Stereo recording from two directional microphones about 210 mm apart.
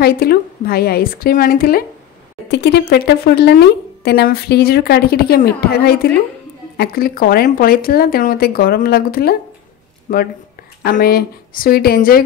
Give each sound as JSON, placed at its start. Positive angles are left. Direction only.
{"t": 0.0, "sound": "speech", "side_deg": 45}
{"t": 2.4, "sound": "speech", "side_deg": 55}
{"t": 10.8, "sound": "speech", "side_deg": 45}